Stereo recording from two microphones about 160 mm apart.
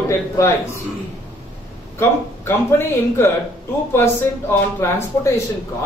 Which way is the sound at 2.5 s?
15° left (ahead or behind).